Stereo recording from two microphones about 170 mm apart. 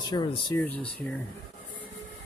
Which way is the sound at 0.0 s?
25° left (ahead or behind).